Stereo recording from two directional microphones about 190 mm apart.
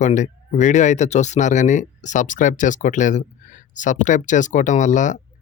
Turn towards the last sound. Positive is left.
turn(degrees=40)  # may be behind; listen again after turning